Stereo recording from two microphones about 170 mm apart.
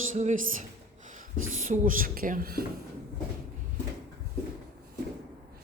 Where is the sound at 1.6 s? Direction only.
50° right (ahead or behind).